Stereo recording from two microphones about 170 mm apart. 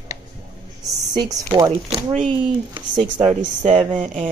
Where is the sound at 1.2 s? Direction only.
25° right (ahead or behind).